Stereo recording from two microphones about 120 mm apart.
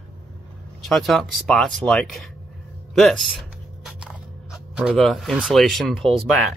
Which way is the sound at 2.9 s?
Centre (ahead or behind).